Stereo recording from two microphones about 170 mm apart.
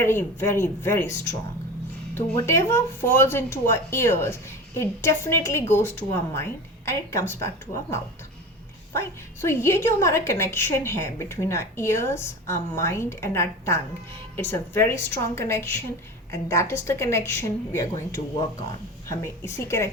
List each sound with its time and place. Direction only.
0.0 s speech: 15° left (ahead or behind)
2.5 s speech: 15° left (ahead or behind)